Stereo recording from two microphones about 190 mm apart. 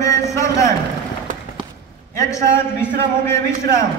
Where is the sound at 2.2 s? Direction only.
15° left (ahead or behind).